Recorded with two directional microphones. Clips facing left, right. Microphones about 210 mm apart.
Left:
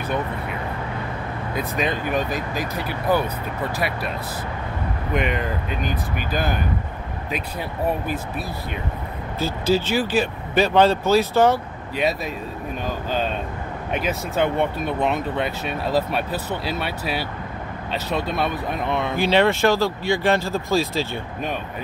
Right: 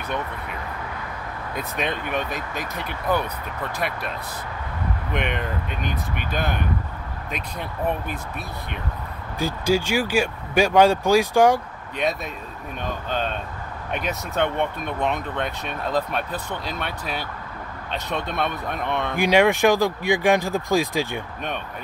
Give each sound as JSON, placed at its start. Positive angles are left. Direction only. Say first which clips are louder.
{"t": 1.6, "sound": "speech", "louder": "left 3 dB", "side_deg": 0}
{"t": 5.1, "sound": "speech", "louder": "left 4 dB", "side_deg": 5}
{"t": 9.4, "sound": "speech", "louder": "left 1 dB", "side_deg": -10}
{"t": 13.9, "sound": "speech", "louder": "left 2 dB", "side_deg": 0}
{"t": 19.1, "sound": "speech", "louder": "right 1 dB", "side_deg": -15}